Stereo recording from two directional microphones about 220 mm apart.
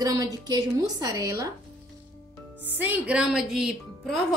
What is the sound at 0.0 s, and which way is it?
A woman's voice, 15° right (ahead or behind).